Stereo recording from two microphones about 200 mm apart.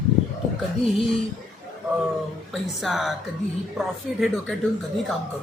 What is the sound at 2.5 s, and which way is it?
Speech, centre (ahead or behind).